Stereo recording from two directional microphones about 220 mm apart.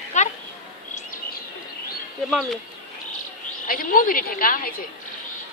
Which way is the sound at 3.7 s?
40° left (ahead or behind).